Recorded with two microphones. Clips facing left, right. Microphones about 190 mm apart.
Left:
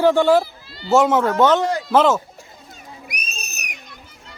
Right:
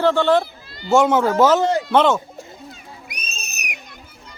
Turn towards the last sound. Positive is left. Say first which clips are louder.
# left 2 dB
turn(degrees=-25)  # may be behind; listen again after turning